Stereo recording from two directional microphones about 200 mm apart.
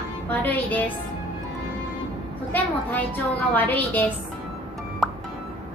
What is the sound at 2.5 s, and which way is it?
A woman's voice, 10° left (ahead or behind).